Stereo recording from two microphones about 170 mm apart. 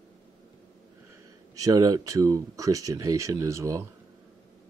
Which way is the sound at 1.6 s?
20° right (ahead or behind).